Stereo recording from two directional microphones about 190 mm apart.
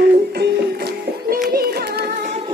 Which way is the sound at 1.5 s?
55° right (ahead or behind).